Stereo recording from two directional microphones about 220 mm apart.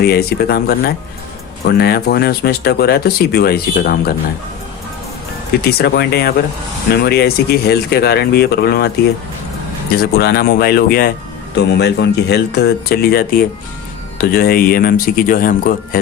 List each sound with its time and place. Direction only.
0.0 s speech: 45° left (ahead or behind)
5.6 s speech: 45° left (ahead or behind)
10.0 s speech: 45° left (ahead or behind)